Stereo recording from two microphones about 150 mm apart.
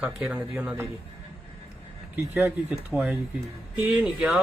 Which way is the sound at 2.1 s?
15° right (ahead or behind).